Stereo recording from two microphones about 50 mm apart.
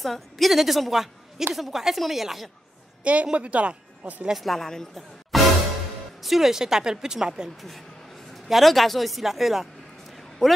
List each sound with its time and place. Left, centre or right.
0.0 s a woman's voice: centre
3.0 s a woman's voice: right
4.3 s a woman's voice: centre
5.3 s music: centre
6.2 s a woman's voice: centre
8.5 s a woman's voice: centre